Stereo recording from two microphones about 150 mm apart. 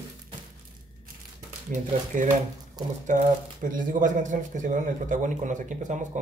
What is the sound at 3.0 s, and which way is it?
Speech, 60° right (ahead or behind).